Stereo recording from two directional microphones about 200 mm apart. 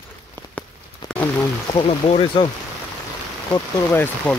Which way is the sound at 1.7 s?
30° left (ahead or behind).